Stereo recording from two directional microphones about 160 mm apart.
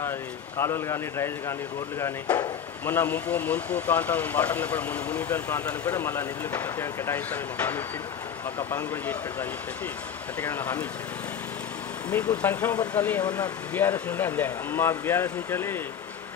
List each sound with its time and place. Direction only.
0.6 s speech: 15° left (ahead or behind)
8.6 s speech: 10° left (ahead or behind)
12.1 s speech: 10° left (ahead or behind)